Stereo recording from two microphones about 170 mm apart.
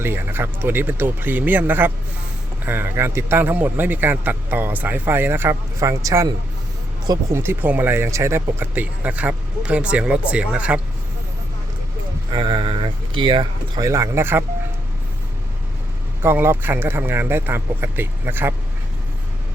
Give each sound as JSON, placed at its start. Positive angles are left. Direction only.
{"t": 0.0, "sound": "a man's voice", "side_deg": -15}
{"t": 12.3, "sound": "speech", "side_deg": -30}
{"t": 16.2, "sound": "a man's voice", "side_deg": -15}